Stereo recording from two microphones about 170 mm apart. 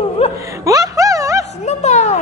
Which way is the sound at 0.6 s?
20° right (ahead or behind).